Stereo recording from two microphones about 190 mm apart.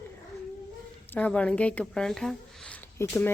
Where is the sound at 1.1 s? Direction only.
5° left (ahead or behind).